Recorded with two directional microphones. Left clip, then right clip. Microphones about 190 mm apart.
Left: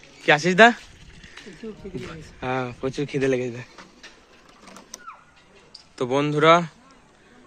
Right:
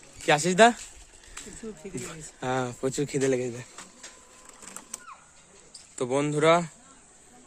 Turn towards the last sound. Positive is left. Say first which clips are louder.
# left 5 dB
turn(degrees=-10)  # may be behind; listen again after turning